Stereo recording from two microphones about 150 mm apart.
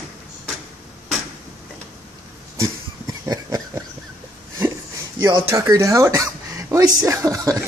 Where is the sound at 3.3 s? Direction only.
25° right (ahead or behind).